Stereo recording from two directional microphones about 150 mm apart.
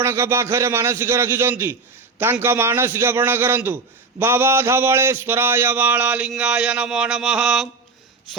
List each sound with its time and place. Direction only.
0.0 s speech: 20° right (ahead or behind)